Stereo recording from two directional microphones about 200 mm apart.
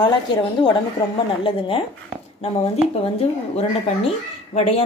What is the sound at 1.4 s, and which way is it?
Speech, 25° left (ahead or behind).